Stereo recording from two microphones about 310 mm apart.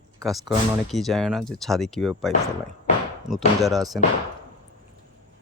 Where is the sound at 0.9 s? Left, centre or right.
Centre.